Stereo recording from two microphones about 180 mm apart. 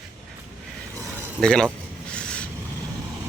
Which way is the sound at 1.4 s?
5° left (ahead or behind).